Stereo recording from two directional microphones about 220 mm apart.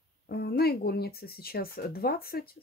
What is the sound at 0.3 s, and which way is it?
Speech, 45° left (ahead or behind).